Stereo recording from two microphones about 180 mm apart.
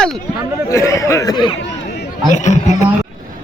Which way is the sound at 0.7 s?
15° left (ahead or behind).